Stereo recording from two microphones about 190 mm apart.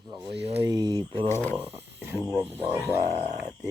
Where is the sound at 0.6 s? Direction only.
20° right (ahead or behind).